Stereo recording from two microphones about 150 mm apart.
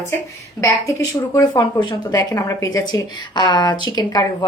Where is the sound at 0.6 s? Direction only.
20° left (ahead or behind).